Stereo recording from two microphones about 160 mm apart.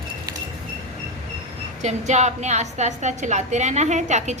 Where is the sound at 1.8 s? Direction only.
45° right (ahead or behind).